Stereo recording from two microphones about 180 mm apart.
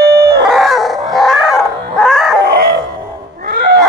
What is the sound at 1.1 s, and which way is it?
Dog, centre (ahead or behind).